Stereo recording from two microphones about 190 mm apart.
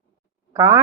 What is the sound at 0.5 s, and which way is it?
Speech, 20° right (ahead or behind).